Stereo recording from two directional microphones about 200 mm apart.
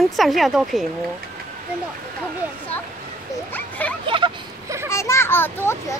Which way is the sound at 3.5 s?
10° left (ahead or behind).